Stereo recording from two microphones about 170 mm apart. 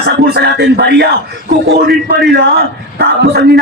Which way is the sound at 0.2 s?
75° right (ahead or behind).